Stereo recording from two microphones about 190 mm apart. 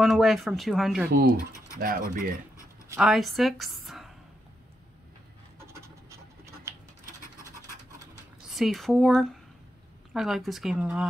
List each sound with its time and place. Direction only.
0.0 s speech: centre (ahead or behind)
1.1 s speech: 50° right (ahead or behind)
3.0 s speech: centre (ahead or behind)
5.7 s scratch: 15° right (ahead or behind)
8.5 s speech: centre (ahead or behind)